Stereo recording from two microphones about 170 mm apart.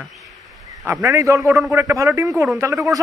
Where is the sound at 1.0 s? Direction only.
20° right (ahead or behind).